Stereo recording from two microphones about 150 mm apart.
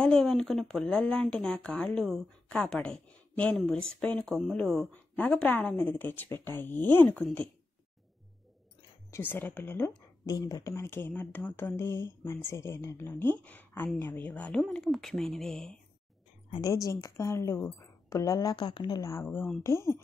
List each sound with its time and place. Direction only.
0.0 s speech: 5° left (ahead or behind)
9.1 s speech: 15° left (ahead or behind)
10.2 s speech: 25° left (ahead or behind); by 15.8 s 5° left (ahead or behind)
16.6 s a woman's voice: 25° left (ahead or behind)